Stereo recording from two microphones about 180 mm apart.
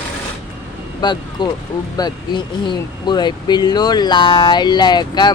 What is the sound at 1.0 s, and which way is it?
Speech, 25° left (ahead or behind).